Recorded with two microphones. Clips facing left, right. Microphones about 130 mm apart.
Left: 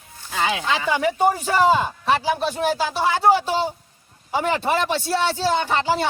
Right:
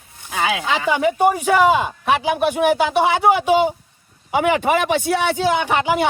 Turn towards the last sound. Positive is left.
turn(degrees=-15)  # may be behind; listen again after turning